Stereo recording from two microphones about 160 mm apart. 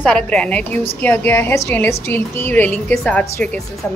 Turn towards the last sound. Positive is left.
turn(degrees=10)  # may be behind; listen again after turning